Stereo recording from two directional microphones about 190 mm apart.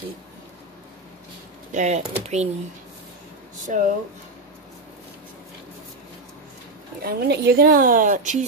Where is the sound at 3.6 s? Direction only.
40° right (ahead or behind).